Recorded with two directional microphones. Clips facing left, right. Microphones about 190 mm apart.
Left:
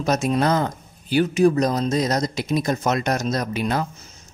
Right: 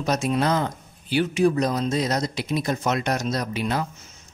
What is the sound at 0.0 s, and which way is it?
Speech, 45° left (ahead or behind).